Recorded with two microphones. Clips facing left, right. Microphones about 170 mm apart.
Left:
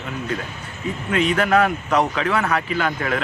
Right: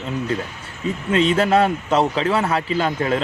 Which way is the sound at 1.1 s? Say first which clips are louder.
Right 2 dB; 30° right (ahead or behind).